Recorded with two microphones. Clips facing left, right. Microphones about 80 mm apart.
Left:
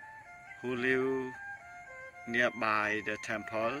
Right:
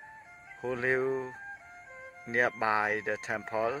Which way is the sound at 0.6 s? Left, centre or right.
Right.